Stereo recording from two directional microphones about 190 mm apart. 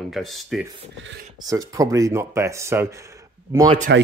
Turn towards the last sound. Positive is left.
turn(degrees=-15)  # may be behind; listen again after turning